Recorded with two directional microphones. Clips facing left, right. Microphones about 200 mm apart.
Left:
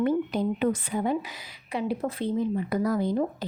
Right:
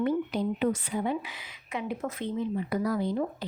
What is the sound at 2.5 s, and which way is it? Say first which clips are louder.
Speech: left 3 dB; 45° left (ahead or behind).